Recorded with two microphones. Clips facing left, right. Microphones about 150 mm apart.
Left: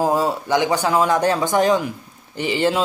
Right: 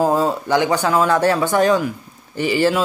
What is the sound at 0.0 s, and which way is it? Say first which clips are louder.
Speech: right 2 dB; 10° left (ahead or behind).